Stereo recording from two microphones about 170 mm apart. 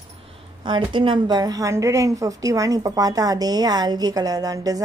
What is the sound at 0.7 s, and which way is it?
A woman's voice, 30° right (ahead or behind).